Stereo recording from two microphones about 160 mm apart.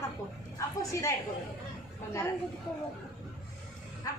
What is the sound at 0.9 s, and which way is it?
Speech, 20° left (ahead or behind).